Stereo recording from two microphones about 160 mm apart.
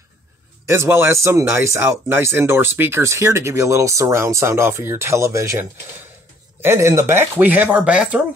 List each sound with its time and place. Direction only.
0.7 s speech: 15° right (ahead or behind)